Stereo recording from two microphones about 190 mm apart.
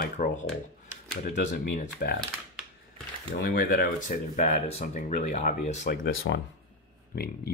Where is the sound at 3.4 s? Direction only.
55° left (ahead or behind).